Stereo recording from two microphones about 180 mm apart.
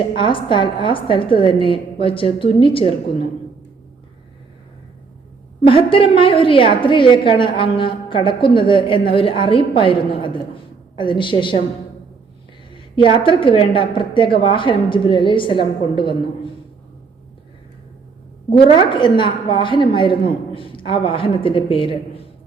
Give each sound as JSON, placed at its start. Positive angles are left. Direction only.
{"t": 0.2, "sound": "a woman's voice", "side_deg": 30}
{"t": 5.6, "sound": "a woman's voice", "side_deg": 30}
{"t": 13.1, "sound": "a woman's voice", "side_deg": 30}
{"t": 18.5, "sound": "a woman's voice", "side_deg": 25}